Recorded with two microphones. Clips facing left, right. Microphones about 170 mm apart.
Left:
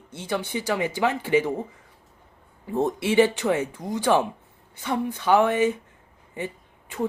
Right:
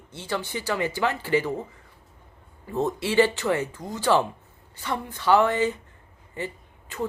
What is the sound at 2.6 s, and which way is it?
Speech, 15° left (ahead or behind).